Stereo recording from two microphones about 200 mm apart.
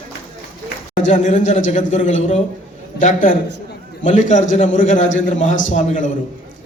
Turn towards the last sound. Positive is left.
turn(degrees=40)  # may be behind; listen again after turning